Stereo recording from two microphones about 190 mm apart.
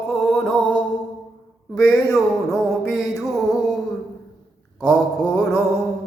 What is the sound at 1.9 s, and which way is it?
Mantra, centre (ahead or behind).